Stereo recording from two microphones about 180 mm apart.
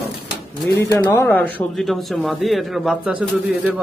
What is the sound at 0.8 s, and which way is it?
Speech, 10° left (ahead or behind).